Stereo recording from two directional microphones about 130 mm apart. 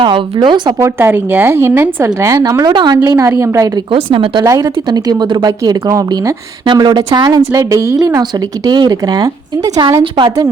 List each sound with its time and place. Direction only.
0.0 s a woman's voice: 40° right (ahead or behind)
0.8 s a woman's voice: 20° right (ahead or behind)
2.0 s a woman's voice: 30° right (ahead or behind)
4.1 s speech: 45° right (ahead or behind)
4.4 s a woman's voice: 25° right (ahead or behind)
10.0 s a woman's voice: 40° right (ahead or behind)